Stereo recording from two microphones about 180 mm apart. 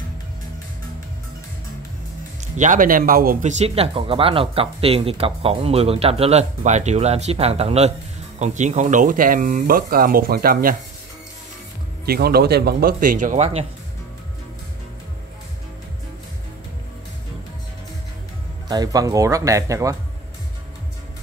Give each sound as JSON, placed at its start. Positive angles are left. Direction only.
{"t": 2.5, "sound": "speech", "side_deg": -45}
{"t": 12.1, "sound": "speech", "side_deg": -60}
{"t": 18.7, "sound": "speech", "side_deg": -20}